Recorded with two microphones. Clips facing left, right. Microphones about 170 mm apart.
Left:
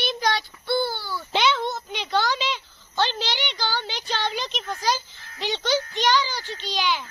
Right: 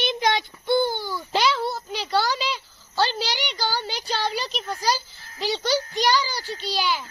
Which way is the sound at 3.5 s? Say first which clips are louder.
Right 1 dB; 10° right (ahead or behind).